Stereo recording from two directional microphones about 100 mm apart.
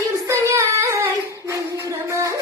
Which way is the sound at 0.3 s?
30° right (ahead or behind).